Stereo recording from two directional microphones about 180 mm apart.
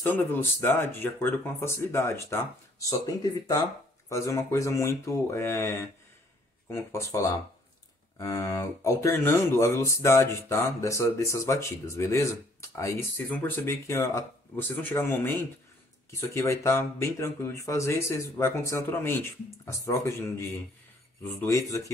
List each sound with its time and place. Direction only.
0.0 s speech: 10° left (ahead or behind)